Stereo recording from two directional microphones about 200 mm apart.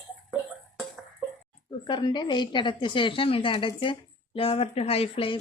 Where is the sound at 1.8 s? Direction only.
25° left (ahead or behind).